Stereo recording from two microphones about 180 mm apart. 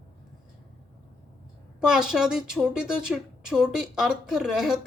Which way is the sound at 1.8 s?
5° right (ahead or behind).